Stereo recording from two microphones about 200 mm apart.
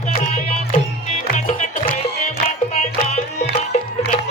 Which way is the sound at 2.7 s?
35° left (ahead or behind).